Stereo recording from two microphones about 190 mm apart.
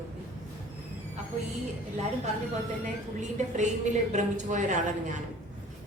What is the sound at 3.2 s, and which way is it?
A woman's voice, 40° right (ahead or behind).